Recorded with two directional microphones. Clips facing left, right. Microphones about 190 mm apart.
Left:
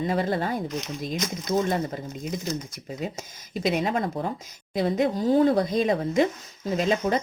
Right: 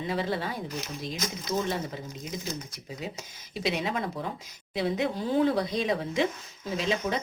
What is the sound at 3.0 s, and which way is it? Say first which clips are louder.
Speech: left 5 dB; 45° left (ahead or behind).